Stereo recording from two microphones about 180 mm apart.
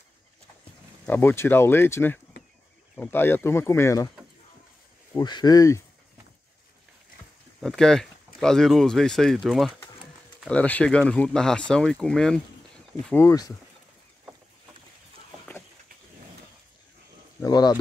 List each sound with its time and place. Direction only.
1.0 s speech: 10° left (ahead or behind)
5.1 s speech: 25° left (ahead or behind)
7.6 s speech: 5° left (ahead or behind)
17.4 s speech: 20° left (ahead or behind)